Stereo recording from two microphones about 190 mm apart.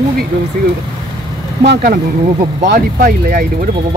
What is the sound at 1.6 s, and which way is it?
Speech, 50° right (ahead or behind).